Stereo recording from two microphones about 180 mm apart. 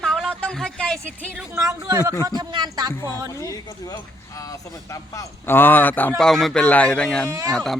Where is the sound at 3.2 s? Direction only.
20° right (ahead or behind).